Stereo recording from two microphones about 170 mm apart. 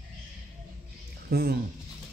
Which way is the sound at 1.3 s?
65° right (ahead or behind).